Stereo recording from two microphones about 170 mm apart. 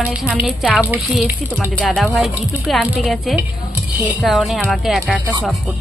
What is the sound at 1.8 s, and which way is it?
Speech, 5° left (ahead or behind).